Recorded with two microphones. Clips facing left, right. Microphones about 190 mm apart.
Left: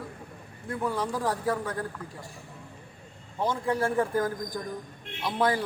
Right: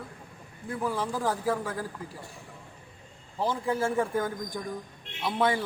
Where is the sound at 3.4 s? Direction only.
5° right (ahead or behind).